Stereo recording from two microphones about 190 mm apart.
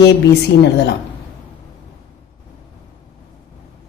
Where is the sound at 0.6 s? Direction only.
60° left (ahead or behind).